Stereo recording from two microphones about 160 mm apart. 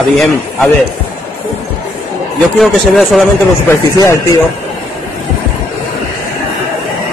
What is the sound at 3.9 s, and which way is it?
Speech, 20° left (ahead or behind).